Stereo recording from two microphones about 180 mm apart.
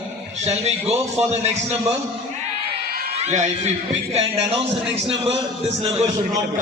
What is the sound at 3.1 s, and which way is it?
A man's voice, 40° right (ahead or behind).